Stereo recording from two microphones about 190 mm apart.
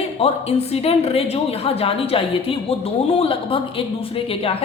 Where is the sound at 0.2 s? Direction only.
30° left (ahead or behind).